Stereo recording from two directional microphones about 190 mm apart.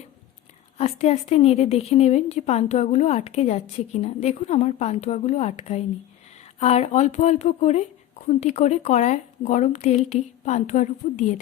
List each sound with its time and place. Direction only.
0.8 s a woman's voice: 35° left (ahead or behind)